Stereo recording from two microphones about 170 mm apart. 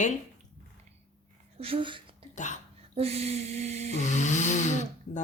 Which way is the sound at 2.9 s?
35° right (ahead or behind).